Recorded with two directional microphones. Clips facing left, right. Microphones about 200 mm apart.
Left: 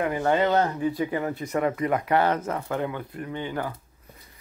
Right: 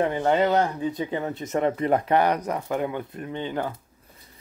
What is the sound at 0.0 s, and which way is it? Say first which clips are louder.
Speech: right 1 dB; 25° right (ahead or behind).